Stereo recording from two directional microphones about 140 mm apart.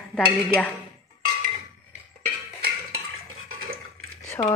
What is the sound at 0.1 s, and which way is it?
Speech, 10° left (ahead or behind).